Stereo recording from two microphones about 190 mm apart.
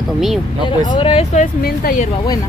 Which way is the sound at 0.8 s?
25° left (ahead or behind).